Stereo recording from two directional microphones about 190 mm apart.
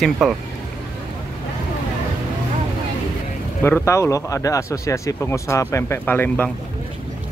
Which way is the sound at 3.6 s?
15° left (ahead or behind).